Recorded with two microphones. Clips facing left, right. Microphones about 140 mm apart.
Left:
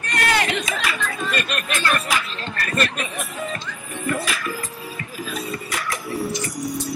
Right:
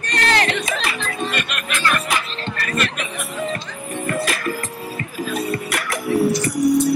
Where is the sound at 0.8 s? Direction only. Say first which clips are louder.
Right 1 dB; 30° right (ahead or behind).